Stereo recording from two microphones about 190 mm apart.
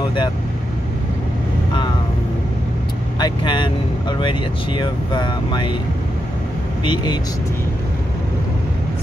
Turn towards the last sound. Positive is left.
turn(degrees=25)  # may be behind; listen again after turning